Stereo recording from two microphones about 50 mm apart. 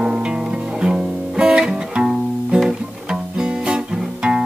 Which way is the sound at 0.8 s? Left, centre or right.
Centre.